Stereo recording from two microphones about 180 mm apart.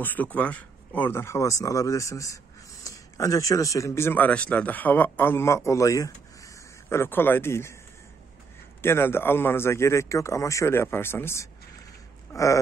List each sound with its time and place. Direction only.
0.0 s speech: 10° left (ahead or behind)
8.8 s a man's voice: 15° left (ahead or behind)